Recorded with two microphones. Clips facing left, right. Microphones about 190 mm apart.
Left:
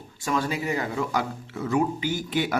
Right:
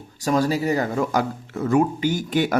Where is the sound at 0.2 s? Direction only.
40° right (ahead or behind).